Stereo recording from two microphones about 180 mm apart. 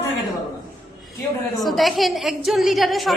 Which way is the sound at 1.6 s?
Centre (ahead or behind).